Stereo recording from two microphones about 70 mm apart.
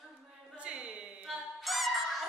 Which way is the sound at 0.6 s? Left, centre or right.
Centre.